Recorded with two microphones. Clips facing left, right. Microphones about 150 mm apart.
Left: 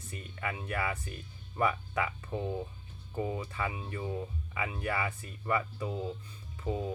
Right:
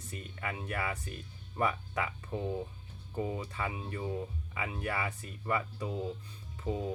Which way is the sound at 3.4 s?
35° right (ahead or behind).